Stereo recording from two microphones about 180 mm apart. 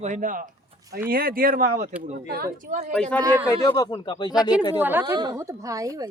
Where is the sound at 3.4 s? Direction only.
20° left (ahead or behind).